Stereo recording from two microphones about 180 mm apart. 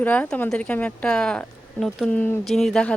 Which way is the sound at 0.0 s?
10° left (ahead or behind).